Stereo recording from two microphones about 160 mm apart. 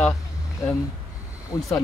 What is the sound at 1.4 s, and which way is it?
Speech, 20° left (ahead or behind).